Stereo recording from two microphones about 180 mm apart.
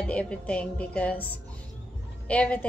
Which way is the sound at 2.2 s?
5° left (ahead or behind).